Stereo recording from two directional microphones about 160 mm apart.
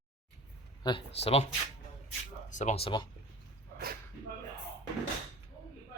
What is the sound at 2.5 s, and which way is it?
Speech, 50° left (ahead or behind).